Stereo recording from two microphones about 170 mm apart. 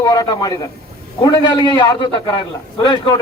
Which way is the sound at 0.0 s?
25° left (ahead or behind).